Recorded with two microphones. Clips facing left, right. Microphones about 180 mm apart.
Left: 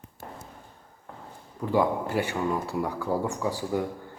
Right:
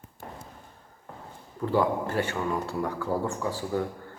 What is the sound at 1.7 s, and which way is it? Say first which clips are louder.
Speech: left 1 dB; 15° left (ahead or behind).